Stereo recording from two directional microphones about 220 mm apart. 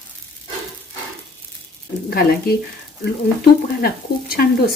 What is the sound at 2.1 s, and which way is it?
Speech, 45° left (ahead or behind).